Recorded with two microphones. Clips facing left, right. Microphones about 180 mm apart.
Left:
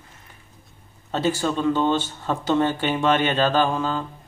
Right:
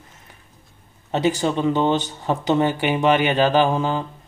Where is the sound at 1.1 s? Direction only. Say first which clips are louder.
Right 3 dB; 15° right (ahead or behind).